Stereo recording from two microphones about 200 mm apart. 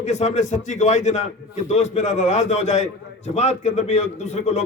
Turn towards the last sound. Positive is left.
turn(degrees=35)  # may be behind; listen again after turning